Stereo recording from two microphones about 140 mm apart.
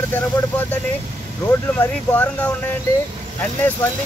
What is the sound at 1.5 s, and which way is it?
Speech, 15° left (ahead or behind).